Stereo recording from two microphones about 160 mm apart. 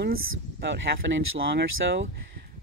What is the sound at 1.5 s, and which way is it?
Speech, 90° right.